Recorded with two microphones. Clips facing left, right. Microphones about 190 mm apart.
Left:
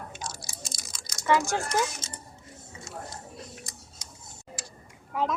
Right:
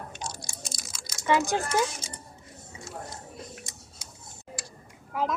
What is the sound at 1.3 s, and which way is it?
Speech, 20° right (ahead or behind).